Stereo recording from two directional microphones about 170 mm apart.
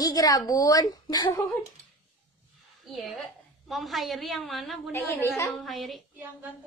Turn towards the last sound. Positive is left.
turn(degrees=-10)  # may be behind; listen again after turning